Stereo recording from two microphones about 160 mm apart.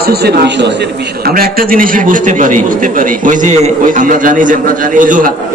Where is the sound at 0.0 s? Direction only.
80° right.